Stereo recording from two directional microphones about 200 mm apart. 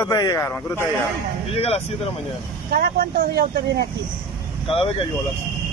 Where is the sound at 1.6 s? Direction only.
30° left (ahead or behind).